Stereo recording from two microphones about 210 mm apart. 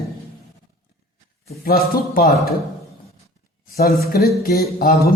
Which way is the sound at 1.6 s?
45° left (ahead or behind).